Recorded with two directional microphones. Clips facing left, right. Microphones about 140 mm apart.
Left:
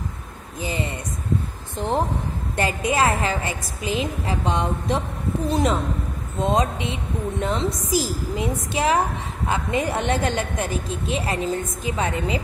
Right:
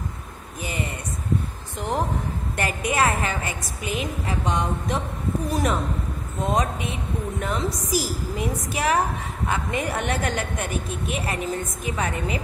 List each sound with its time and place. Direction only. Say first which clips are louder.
0.6 s speech: left 3 dB; 30° left (ahead or behind)
2.5 s a woman's voice: left 3 dB; 25° left (ahead or behind)